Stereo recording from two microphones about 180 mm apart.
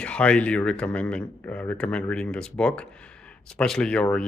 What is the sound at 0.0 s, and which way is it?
Speech, 5° left (ahead or behind).